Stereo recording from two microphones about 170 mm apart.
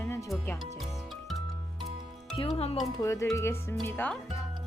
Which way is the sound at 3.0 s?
15° left (ahead or behind).